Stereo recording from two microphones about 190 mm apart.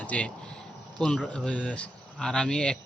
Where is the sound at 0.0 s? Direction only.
5° left (ahead or behind).